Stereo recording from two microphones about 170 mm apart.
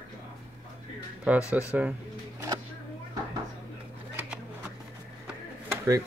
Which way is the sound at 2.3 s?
20° right (ahead or behind).